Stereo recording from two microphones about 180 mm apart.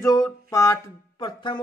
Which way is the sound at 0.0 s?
15° left (ahead or behind).